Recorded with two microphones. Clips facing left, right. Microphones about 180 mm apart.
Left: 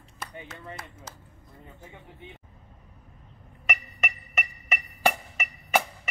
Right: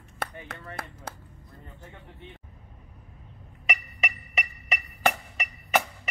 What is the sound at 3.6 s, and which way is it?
Music, centre (ahead or behind).